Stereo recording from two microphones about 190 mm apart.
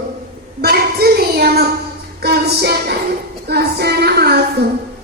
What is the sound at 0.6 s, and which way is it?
Child singing, 55° right (ahead or behind).